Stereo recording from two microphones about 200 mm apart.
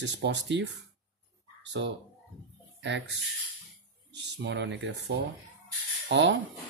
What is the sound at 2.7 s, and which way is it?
Speech, 65° right (ahead or behind).